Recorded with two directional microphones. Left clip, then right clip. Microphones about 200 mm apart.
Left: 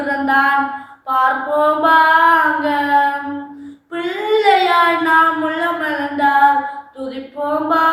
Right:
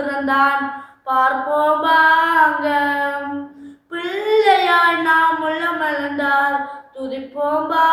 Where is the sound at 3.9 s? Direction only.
15° right (ahead or behind).